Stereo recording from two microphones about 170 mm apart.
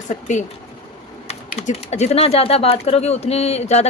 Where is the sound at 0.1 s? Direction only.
45° left (ahead or behind).